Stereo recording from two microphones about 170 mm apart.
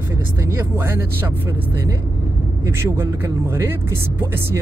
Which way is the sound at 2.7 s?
15° right (ahead or behind).